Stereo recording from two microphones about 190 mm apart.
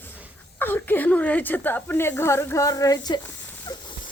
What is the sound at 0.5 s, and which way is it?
A woman's voice, 10° left (ahead or behind).